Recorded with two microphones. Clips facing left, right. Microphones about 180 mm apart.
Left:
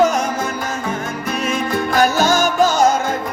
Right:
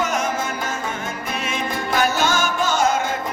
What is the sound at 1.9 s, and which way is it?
Music, 40° left (ahead or behind).